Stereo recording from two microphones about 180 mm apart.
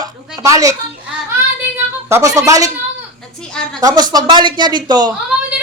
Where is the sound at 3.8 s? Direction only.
20° right (ahead or behind).